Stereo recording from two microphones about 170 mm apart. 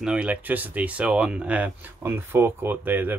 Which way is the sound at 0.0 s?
5° right (ahead or behind).